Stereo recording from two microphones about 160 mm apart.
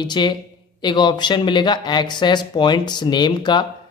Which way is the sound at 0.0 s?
25° left (ahead or behind).